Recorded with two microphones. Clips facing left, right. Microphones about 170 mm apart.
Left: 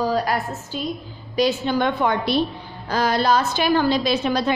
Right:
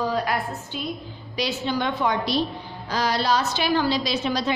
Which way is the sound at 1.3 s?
50° left (ahead or behind).